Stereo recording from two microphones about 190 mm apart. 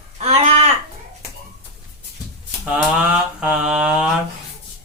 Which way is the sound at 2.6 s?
5° right (ahead or behind).